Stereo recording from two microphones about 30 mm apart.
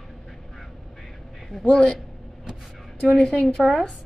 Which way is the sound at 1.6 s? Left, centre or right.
Left.